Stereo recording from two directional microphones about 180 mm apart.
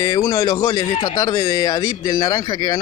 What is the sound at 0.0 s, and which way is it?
Speech, 20° left (ahead or behind).